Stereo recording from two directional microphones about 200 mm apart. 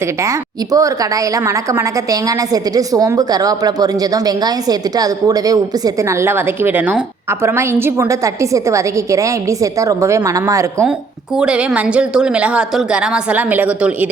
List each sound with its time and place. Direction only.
0.2 s a woman's voice: 15° right (ahead or behind)